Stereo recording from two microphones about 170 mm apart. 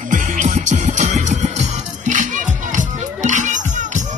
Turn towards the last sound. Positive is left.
turn(degrees=-45)  # may be behind; listen again after turning